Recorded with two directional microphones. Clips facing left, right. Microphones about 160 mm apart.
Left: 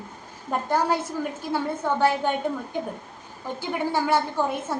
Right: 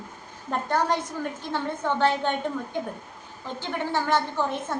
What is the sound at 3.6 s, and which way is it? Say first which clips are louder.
A woman's voice: left 2 dB; 10° left (ahead or behind).